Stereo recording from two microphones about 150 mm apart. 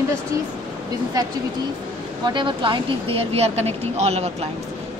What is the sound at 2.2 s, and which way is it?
Speech, 30° right (ahead or behind).